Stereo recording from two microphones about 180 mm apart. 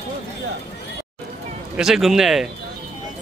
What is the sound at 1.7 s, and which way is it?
Speech, centre (ahead or behind).